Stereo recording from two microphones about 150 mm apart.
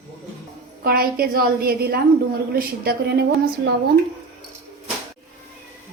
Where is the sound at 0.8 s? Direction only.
80° right.